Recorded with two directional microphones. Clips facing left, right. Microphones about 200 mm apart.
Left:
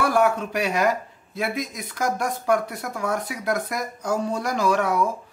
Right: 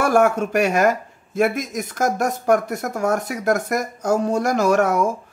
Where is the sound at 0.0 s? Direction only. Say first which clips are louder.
Right 4 dB; 45° right (ahead or behind).